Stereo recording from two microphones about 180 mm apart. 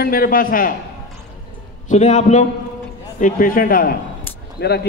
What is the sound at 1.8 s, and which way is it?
A man's voice, 45° left (ahead or behind).